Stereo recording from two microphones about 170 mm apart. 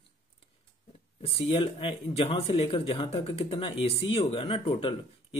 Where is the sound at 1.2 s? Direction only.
30° left (ahead or behind).